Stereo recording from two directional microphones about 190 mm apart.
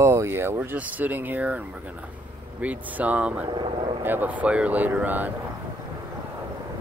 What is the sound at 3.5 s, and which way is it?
Speech, 25° right (ahead or behind).